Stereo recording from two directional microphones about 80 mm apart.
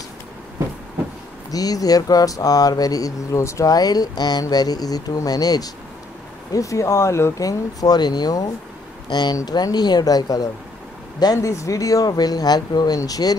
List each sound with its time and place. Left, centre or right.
1.5 s speech: left
6.5 s speech: left
7.4 s speech: left